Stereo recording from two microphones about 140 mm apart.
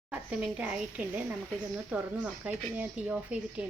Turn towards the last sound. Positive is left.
turn(degrees=-10)  # may be behind; listen again after turning